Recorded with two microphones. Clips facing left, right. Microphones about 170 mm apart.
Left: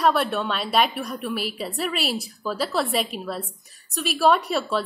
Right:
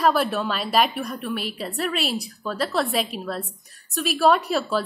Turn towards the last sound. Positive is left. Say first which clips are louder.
# right 1 dB
turn(degrees=0)  # may be behind; listen again after turning